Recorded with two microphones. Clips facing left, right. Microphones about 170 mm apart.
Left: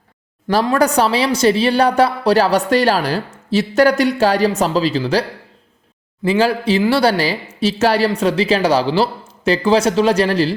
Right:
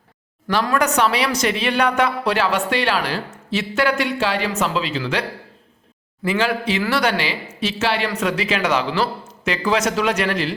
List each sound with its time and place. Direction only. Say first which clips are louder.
0.6 s a woman's voice: left 4 dB; 30° left (ahead or behind)
6.2 s a woman's voice: left 5 dB; 30° left (ahead or behind)